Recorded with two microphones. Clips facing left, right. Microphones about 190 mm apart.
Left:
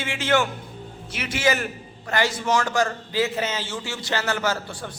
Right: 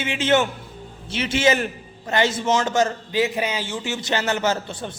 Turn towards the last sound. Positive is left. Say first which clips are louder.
# right 3 dB
turn(degrees=-20)  # may be behind; listen again after turning